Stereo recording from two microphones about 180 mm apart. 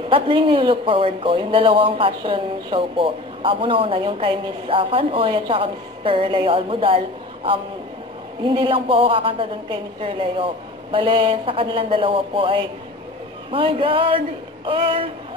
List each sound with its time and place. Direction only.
0.1 s speech: 30° right (ahead or behind)
8.5 s speech: 30° right (ahead or behind)